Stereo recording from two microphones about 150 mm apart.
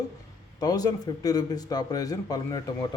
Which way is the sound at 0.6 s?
25° left (ahead or behind).